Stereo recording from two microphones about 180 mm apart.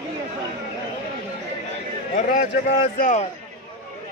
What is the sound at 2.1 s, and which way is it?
Speech, 45° left (ahead or behind).